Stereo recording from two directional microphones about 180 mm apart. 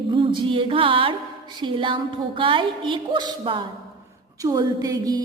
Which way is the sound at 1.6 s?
30° right (ahead or behind).